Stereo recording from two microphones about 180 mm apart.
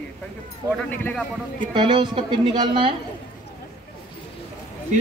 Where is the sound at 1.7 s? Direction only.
25° right (ahead or behind).